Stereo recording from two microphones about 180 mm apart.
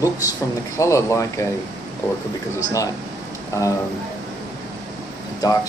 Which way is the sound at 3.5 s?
15° left (ahead or behind).